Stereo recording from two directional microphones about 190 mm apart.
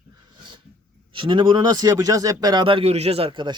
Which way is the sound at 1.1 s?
25° right (ahead or behind).